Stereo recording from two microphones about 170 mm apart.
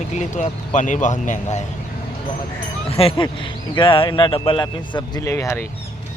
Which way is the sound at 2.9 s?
35° left (ahead or behind).